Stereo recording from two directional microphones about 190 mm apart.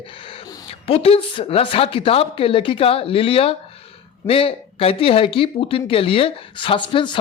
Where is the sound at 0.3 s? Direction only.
30° left (ahead or behind).